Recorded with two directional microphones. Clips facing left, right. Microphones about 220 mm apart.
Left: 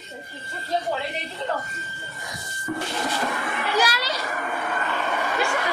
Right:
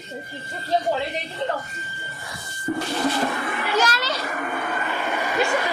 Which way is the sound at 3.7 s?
10° left (ahead or behind).